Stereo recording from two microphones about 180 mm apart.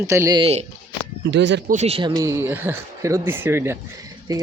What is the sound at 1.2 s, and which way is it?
Speech, 80° right.